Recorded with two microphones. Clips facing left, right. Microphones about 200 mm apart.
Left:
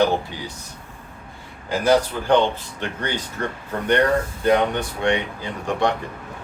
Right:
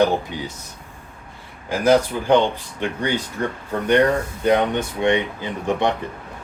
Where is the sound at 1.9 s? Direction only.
15° right (ahead or behind).